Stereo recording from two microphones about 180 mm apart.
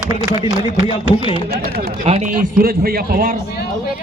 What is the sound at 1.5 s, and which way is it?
Speech, 60° right (ahead or behind).